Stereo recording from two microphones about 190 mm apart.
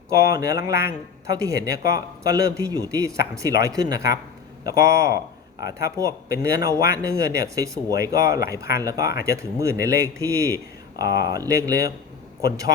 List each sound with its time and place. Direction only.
0.1 s speech: 15° right (ahead or behind)
6.2 s speech: 15° right (ahead or behind)